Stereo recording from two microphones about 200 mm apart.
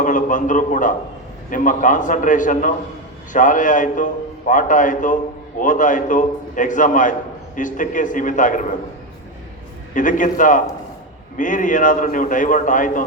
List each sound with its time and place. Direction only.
0.0 s a sound: 40° left (ahead or behind)
1.5 s a man's voice: 40° left (ahead or behind)
9.9 s a man's voice: 40° left (ahead or behind)